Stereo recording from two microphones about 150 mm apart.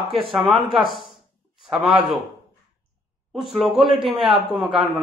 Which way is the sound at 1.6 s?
Centre (ahead or behind).